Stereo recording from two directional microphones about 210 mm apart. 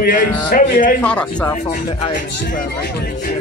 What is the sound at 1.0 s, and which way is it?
Speech, 5° left (ahead or behind).